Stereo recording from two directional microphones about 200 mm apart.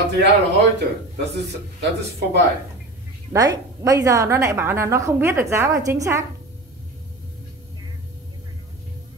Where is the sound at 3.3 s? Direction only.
15° right (ahead or behind).